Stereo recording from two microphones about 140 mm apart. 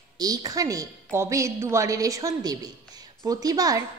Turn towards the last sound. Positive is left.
turn(degrees=-25)  # may be behind; listen again after turning